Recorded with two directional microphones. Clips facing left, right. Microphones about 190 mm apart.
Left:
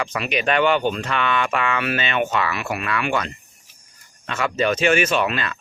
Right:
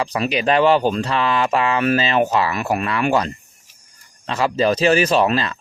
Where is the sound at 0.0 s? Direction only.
35° right (ahead or behind).